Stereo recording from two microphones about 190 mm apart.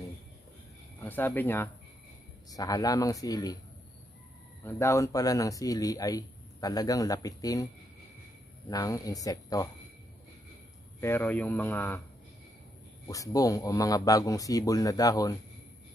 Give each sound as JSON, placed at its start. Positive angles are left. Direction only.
{"t": 1.0, "sound": "a man's voice", "side_deg": 10}
{"t": 4.6, "sound": "speech", "side_deg": 15}
{"t": 11.0, "sound": "a man's voice", "side_deg": 10}
{"t": 13.0, "sound": "a man's voice", "side_deg": 20}